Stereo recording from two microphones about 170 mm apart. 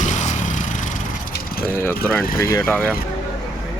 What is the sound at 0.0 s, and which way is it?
Vehicle, 45° left (ahead or behind).